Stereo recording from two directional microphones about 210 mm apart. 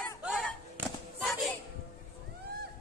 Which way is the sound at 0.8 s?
10° right (ahead or behind).